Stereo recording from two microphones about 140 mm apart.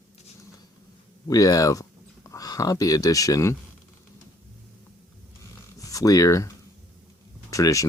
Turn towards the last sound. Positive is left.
turn(degrees=25)  # may be behind; listen again after turning